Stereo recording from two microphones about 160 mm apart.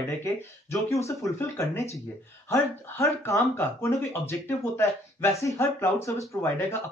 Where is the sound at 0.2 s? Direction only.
15° left (ahead or behind).